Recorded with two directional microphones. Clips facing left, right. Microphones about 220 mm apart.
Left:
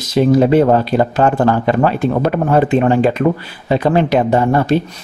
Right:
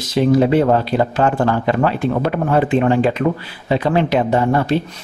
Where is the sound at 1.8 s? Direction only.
45° left (ahead or behind).